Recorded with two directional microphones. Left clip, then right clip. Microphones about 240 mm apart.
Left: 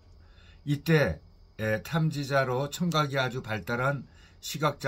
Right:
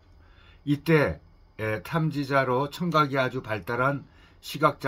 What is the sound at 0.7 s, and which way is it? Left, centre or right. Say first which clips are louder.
Speech: right 3 dB; centre.